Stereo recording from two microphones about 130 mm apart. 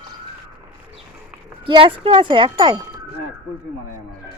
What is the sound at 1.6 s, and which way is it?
Speech, 40° right (ahead or behind).